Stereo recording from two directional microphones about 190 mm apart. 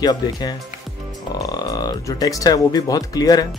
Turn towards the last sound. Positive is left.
turn(degrees=20)  # may be behind; listen again after turning